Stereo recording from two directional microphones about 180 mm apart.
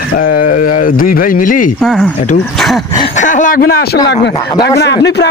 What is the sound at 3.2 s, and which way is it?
Speech, 45° left (ahead or behind).